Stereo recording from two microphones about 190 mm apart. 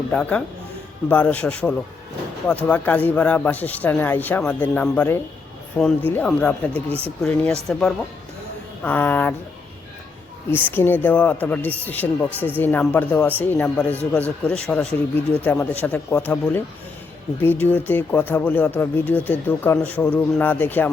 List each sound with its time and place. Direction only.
0.1 s speech: 5° left (ahead or behind)
6.7 s speech: 30° right (ahead or behind)
7.2 s speech: 5° left (ahead or behind)
10.5 s speech: 10° left (ahead or behind)